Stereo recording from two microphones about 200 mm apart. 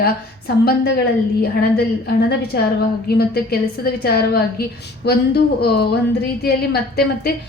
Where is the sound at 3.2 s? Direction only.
50° left (ahead or behind).